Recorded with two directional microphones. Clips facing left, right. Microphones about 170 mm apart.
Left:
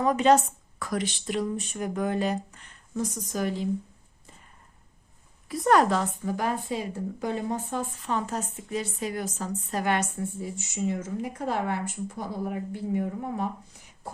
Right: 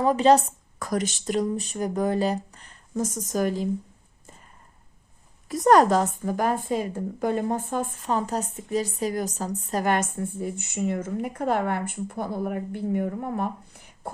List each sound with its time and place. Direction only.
0.0 s speech: 30° right (ahead or behind)
5.5 s a woman's voice: 40° right (ahead or behind)